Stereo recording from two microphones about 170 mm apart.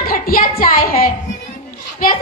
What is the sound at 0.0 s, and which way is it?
A woman's voice, 60° left (ahead or behind).